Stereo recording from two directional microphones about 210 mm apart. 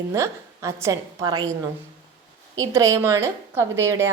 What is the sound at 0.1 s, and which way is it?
A woman's voice, 15° right (ahead or behind).